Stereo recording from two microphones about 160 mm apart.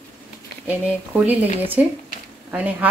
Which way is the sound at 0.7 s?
10° right (ahead or behind).